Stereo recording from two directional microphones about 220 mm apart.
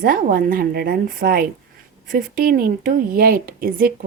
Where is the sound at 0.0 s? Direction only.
40° right (ahead or behind).